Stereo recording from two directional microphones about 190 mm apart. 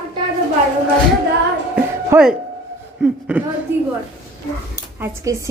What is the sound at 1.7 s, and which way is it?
Music, 5° right (ahead or behind).